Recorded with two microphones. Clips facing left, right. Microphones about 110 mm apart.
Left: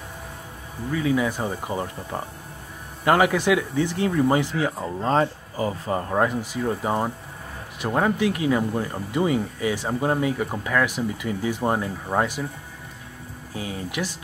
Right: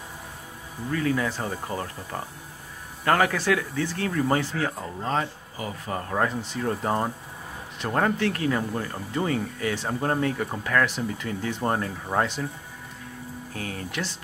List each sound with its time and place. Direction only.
0.9 s speech: 10° left (ahead or behind)
5.0 s speech: 35° left (ahead or behind)
5.9 s speech: 20° left (ahead or behind)
13.6 s speech: 10° left (ahead or behind)